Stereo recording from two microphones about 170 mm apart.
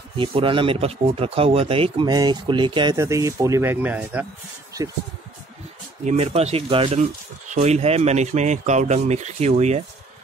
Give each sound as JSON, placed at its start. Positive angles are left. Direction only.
{"t": 0.2, "sound": "speech", "side_deg": -30}
{"t": 6.0, "sound": "speech", "side_deg": -40}